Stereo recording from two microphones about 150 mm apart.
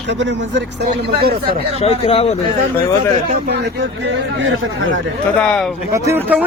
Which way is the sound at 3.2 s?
75° right (ahead or behind).